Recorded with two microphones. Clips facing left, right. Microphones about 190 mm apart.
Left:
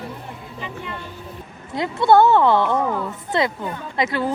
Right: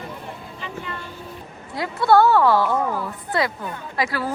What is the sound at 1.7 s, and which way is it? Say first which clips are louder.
A woman's voice: left 2 dB; 20° left (ahead or behind).